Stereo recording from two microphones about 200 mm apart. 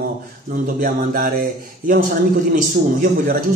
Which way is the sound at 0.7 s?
45° right (ahead or behind).